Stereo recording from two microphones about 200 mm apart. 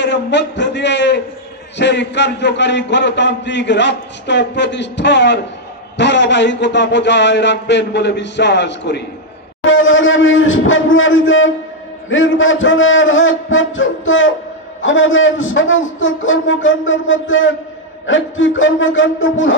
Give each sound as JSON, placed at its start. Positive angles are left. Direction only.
{"t": 0.0, "sound": "a man's voice", "side_deg": 60}
{"t": 9.7, "sound": "a man's voice", "side_deg": 75}